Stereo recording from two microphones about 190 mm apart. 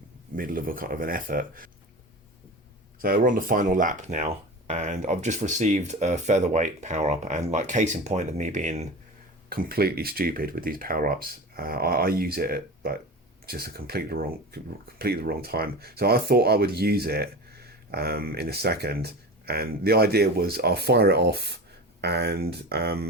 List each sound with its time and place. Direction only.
0.3 s speech: 45° right (ahead or behind)
3.0 s speech: 45° right (ahead or behind)
9.5 s speech: 50° right (ahead or behind)